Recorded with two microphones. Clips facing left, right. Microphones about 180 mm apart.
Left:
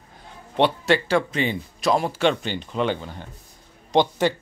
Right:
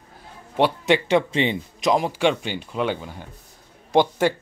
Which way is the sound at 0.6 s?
15° right (ahead or behind).